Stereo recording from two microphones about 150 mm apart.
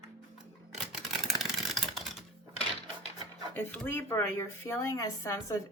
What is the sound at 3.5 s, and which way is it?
Speech, 10° left (ahead or behind).